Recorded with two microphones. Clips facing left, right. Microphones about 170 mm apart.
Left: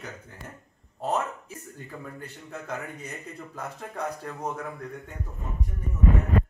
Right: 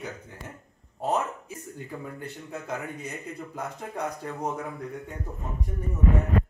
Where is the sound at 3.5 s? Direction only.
15° right (ahead or behind).